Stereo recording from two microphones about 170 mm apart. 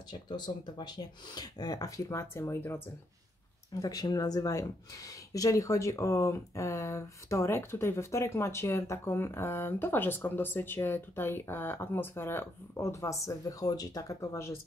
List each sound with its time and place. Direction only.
0.1 s speech: 25° left (ahead or behind)
3.8 s speech: 20° left (ahead or behind)